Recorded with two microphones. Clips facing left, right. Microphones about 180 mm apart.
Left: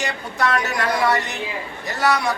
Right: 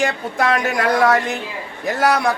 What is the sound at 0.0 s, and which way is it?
Speech, 50° right (ahead or behind).